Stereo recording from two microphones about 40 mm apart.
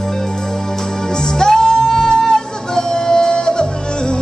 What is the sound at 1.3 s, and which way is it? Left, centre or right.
Music, centre.